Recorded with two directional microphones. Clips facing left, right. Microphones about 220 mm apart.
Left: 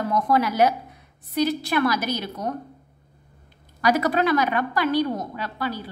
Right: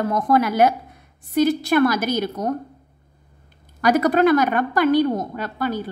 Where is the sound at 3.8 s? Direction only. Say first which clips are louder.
Right 5 dB; 50° right (ahead or behind).